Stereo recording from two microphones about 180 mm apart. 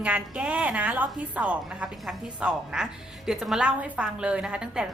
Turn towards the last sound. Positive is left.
turn(degrees=-5)  # may be behind; listen again after turning